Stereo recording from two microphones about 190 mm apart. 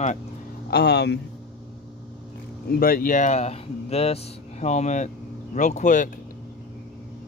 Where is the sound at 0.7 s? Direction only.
60° left (ahead or behind).